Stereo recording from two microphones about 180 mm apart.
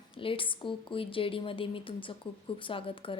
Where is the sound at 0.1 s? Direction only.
30° left (ahead or behind).